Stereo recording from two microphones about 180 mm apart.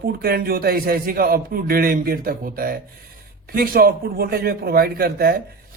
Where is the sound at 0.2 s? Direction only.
55° right (ahead or behind).